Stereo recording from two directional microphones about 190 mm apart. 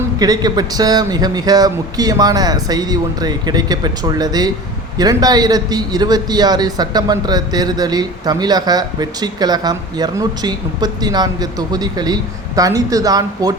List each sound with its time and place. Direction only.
0.2 s a man's voice: 20° right (ahead or behind)